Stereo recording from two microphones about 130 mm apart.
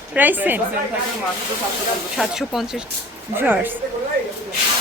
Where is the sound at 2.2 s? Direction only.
5° right (ahead or behind).